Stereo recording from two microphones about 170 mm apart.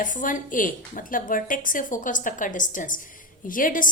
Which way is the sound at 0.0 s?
50° left (ahead or behind).